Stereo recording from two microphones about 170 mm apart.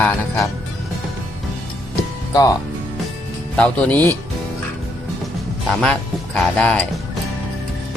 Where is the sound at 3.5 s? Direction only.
5° left (ahead or behind).